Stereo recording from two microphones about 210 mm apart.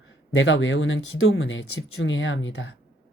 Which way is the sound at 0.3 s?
65° left (ahead or behind).